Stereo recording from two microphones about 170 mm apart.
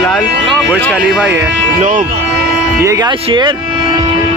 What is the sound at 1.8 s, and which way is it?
Speech, 50° right (ahead or behind).